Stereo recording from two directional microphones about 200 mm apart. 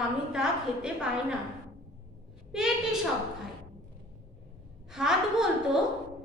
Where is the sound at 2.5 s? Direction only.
Centre (ahead or behind).